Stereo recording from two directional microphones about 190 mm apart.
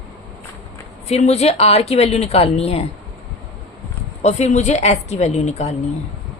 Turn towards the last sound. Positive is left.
turn(degrees=35)  # may be behind; listen again after turning